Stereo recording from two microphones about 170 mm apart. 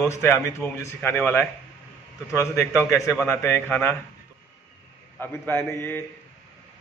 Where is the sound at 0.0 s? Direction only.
15° left (ahead or behind).